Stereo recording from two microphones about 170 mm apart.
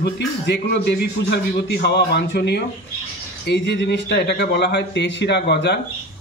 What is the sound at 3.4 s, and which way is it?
A man's voice, 90° left.